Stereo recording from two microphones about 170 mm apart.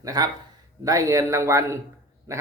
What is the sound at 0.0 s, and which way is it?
A man's voice, 20° right (ahead or behind).